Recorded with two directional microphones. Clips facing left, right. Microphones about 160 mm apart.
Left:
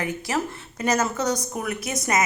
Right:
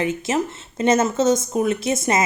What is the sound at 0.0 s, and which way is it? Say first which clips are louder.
A woman's voice: right 5 dB; 20° right (ahead or behind).